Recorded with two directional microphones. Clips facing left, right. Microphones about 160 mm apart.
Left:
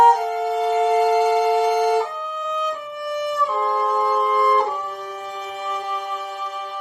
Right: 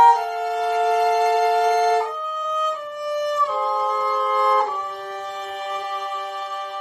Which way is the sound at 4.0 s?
45° left (ahead or behind).